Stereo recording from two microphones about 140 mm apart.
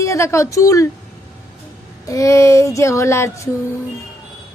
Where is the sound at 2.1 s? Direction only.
20° left (ahead or behind).